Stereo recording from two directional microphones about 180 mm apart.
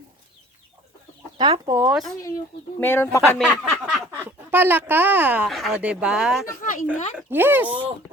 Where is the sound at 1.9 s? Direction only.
Centre (ahead or behind).